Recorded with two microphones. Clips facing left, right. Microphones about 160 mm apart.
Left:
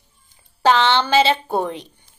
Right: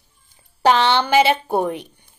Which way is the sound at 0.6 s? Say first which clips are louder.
Even; 15° right (ahead or behind).